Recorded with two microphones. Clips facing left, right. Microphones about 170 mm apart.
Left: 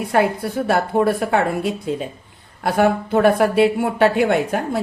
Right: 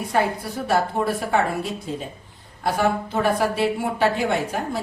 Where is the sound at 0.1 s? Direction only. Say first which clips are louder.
Left 5 dB; 60° left (ahead or behind).